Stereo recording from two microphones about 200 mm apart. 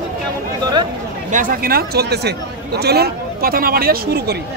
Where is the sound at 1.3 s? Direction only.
45° right (ahead or behind).